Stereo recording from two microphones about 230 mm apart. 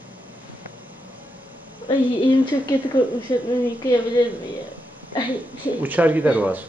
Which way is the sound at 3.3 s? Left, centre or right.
Centre.